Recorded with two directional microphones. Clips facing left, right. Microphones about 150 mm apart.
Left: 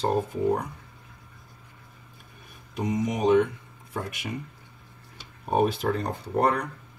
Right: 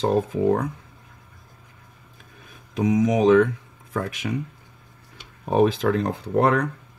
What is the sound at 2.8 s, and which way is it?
Speech, 90° right.